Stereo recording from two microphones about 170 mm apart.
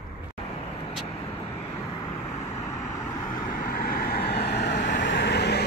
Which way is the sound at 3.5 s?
60° left (ahead or behind).